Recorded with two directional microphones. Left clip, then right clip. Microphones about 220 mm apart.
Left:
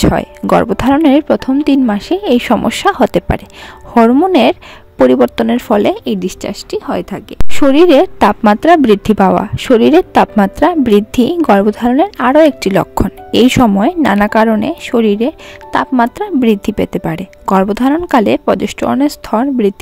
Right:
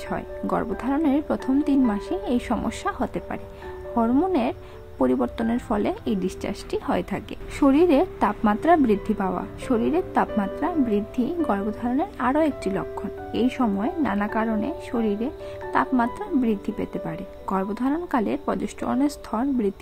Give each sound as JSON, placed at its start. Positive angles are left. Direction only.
{"t": 0.0, "sound": "speech", "side_deg": 45}
{"t": 7.5, "sound": "a woman's voice", "side_deg": 40}